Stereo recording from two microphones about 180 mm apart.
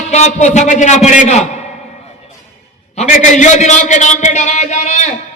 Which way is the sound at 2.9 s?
40° left (ahead or behind).